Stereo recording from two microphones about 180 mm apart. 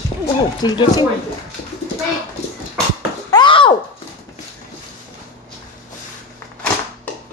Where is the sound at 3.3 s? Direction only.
25° left (ahead or behind).